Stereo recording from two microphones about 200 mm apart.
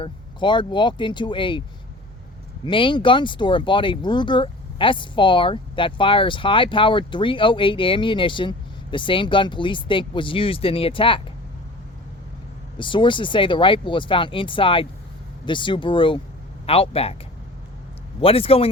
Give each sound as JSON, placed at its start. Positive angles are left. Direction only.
{"t": 0.0, "sound": "speech", "side_deg": 25}
{"t": 2.6, "sound": "speech", "side_deg": 25}
{"t": 12.8, "sound": "speech", "side_deg": 25}
{"t": 18.2, "sound": "speech", "side_deg": 30}